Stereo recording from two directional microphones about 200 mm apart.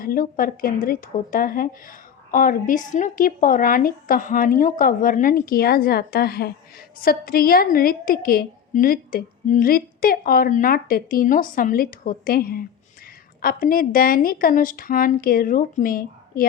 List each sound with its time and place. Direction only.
0.0 s a woman's voice: 45° left (ahead or behind)